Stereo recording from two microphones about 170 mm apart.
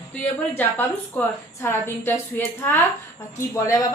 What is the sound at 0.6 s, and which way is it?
A woman's voice, 10° left (ahead or behind).